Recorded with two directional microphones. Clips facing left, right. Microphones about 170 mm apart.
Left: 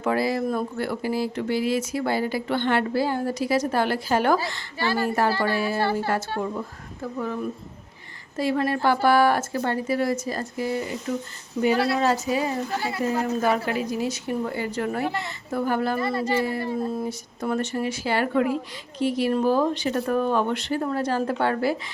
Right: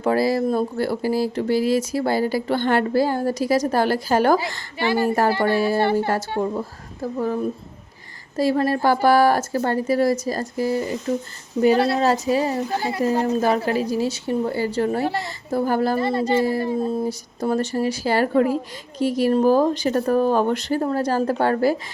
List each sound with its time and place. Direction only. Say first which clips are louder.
0.0 s speech: right 4 dB; 35° right (ahead or behind)
4.8 s speech: right 4 dB; 15° right (ahead or behind)
5.5 s speech: right 5 dB; 40° right (ahead or behind)
5.8 s speech: right 5 dB; 20° right (ahead or behind)
6.4 s speech: right 5 dB; 35° right (ahead or behind)